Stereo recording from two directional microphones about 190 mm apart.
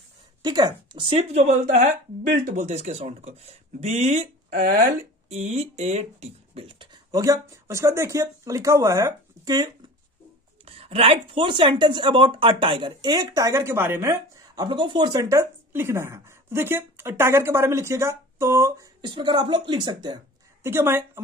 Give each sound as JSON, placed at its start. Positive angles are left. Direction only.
{"t": 0.4, "sound": "speech", "side_deg": -20}
{"t": 5.3, "sound": "speech", "side_deg": -35}
{"t": 20.6, "sound": "a woman's voice", "side_deg": -10}